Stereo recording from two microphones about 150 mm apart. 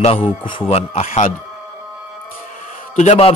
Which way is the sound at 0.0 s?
35° left (ahead or behind).